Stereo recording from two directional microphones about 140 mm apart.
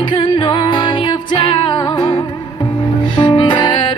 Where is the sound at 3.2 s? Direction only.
35° left (ahead or behind).